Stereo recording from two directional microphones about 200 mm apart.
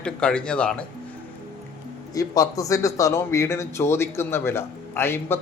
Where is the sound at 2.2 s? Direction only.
15° left (ahead or behind).